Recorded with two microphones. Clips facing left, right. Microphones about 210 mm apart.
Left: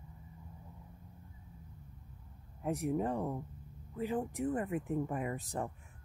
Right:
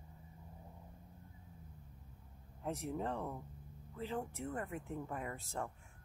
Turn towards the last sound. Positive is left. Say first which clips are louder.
# left 5 dB
turn(degrees=15)  # may be behind; listen again after turning